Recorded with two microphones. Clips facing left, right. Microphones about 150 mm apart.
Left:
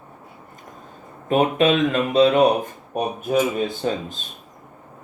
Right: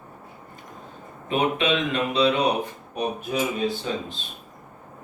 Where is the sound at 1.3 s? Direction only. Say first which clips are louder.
Left 5 dB; 45° left (ahead or behind).